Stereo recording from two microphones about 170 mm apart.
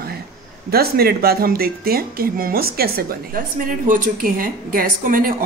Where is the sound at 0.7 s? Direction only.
65° right (ahead or behind).